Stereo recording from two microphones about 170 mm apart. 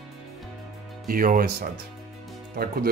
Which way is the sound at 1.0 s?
55° right (ahead or behind).